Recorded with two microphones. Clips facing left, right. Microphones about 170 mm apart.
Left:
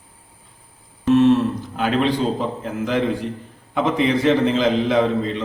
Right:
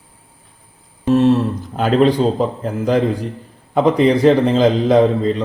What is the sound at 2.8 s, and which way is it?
A man's voice, 40° right (ahead or behind).